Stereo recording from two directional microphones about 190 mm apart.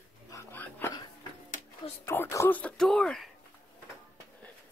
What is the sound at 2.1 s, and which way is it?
Speech, 15° left (ahead or behind).